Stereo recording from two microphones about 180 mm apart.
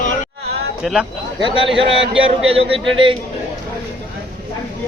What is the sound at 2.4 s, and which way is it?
Speech, 35° right (ahead or behind).